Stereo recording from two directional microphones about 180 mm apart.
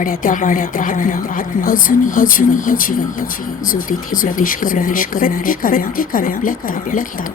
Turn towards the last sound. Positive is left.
turn(degrees=50)  # may be behind; listen again after turning